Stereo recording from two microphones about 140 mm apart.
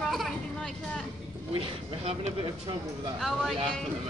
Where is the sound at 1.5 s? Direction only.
45° right (ahead or behind).